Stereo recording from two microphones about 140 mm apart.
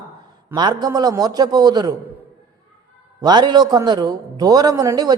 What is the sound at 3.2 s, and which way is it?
A man's voice, 30° right (ahead or behind).